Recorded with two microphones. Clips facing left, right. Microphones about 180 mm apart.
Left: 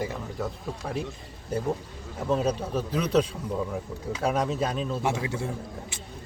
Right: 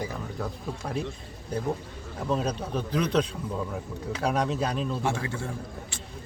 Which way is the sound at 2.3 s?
5° left (ahead or behind).